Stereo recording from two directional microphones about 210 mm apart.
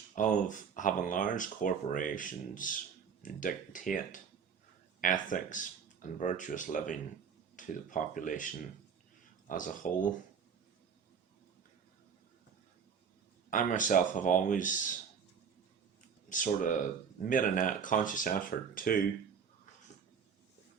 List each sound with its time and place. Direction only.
0.2 s speech: 35° left (ahead or behind)
9.5 s speech: 40° left (ahead or behind)
13.5 s speech: 40° left (ahead or behind)
16.3 s speech: 40° left (ahead or behind)